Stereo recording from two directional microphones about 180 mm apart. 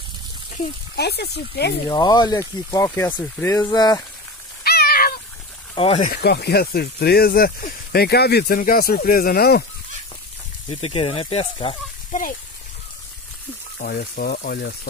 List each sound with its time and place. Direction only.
0.9 s speech: 65° left (ahead or behind)
1.9 s speech: 20° left (ahead or behind)
4.6 s a sound: 60° left (ahead or behind)
5.8 s speech: 35° left (ahead or behind)
6.0 s speech: 55° left (ahead or behind)
10.7 s speech: 30° left (ahead or behind)
12.1 s speech: 50° left (ahead or behind)
13.7 s speech: 60° left (ahead or behind)